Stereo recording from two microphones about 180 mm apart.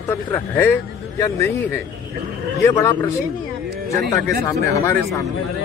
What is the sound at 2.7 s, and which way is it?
Speech, 20° left (ahead or behind).